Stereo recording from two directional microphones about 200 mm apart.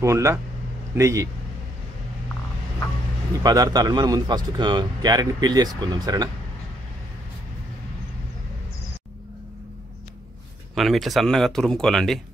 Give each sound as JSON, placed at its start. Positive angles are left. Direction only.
{"t": 0.0, "sound": "speech", "side_deg": -15}
{"t": 3.4, "sound": "speech", "side_deg": -20}
{"t": 10.7, "sound": "speech", "side_deg": 0}